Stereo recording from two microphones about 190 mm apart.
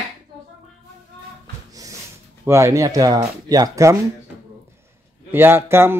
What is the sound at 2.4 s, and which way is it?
A man's voice, 15° right (ahead or behind).